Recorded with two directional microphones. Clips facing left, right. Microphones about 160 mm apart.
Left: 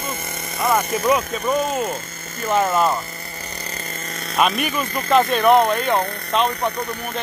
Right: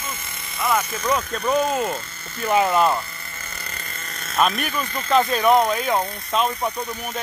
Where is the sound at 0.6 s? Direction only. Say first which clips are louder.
Left 3 dB; 25° left (ahead or behind).